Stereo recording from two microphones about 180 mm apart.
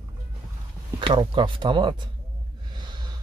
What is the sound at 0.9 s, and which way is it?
Speech, 25° right (ahead or behind).